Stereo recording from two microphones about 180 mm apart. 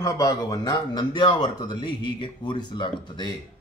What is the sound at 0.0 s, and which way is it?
Speech, 20° left (ahead or behind).